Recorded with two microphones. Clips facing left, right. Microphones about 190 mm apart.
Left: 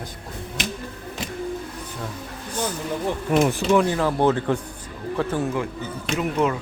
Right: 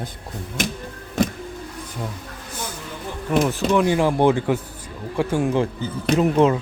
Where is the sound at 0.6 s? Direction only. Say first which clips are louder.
Right 4 dB; 50° right (ahead or behind).